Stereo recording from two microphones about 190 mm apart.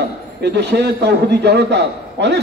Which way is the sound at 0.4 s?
65° right (ahead or behind).